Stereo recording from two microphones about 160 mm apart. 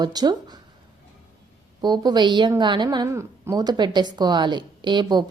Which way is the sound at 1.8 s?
25° right (ahead or behind).